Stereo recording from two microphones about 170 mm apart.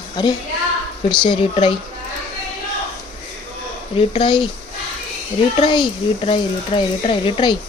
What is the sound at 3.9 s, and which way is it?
Speech, 30° left (ahead or behind).